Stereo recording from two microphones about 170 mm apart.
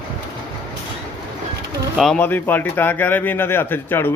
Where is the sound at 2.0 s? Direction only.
5° left (ahead or behind).